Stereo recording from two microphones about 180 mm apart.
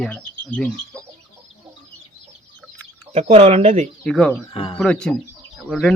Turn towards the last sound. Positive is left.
turn(degrees=0)  # may be behind; listen again after turning